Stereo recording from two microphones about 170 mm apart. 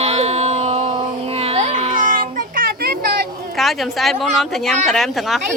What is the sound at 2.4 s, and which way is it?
Children playing, 60° right (ahead or behind).